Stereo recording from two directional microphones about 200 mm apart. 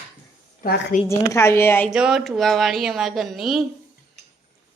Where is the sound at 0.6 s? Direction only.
50° left (ahead or behind).